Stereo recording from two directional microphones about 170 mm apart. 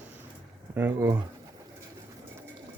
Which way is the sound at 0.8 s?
15° right (ahead or behind).